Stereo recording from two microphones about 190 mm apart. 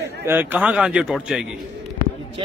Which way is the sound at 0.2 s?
10° right (ahead or behind).